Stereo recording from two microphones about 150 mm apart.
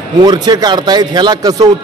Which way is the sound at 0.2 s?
30° right (ahead or behind).